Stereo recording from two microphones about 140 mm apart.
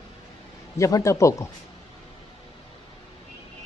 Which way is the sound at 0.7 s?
20° left (ahead or behind).